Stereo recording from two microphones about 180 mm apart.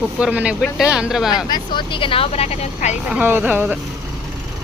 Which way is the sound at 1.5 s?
25° left (ahead or behind).